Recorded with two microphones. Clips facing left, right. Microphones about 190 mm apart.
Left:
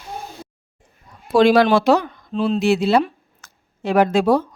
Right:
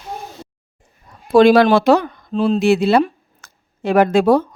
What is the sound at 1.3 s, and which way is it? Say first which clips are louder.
Speech: right 3 dB; 55° right (ahead or behind).